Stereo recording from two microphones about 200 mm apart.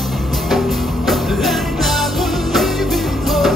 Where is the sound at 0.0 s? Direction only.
Centre (ahead or behind).